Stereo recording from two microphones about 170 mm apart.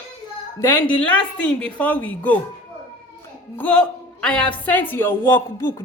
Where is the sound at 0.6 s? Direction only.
10° left (ahead or behind).